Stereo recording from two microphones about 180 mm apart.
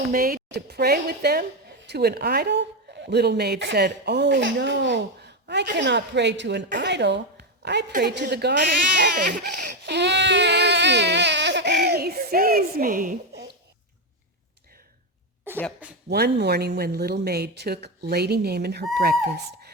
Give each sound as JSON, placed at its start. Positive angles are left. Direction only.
{"t": 0.1, "sound": "a woman's voice", "side_deg": -55}
{"t": 16.0, "sound": "a woman's voice", "side_deg": -65}